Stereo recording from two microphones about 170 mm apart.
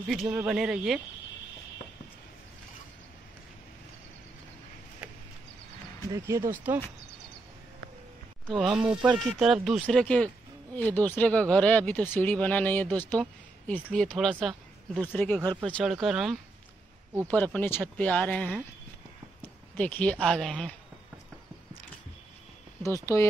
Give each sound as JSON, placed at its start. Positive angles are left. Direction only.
{"t": 0.1, "sound": "speech", "side_deg": 0}
{"t": 6.1, "sound": "speech", "side_deg": -20}
{"t": 8.5, "sound": "speech", "side_deg": -5}
{"t": 17.3, "sound": "speech", "side_deg": 10}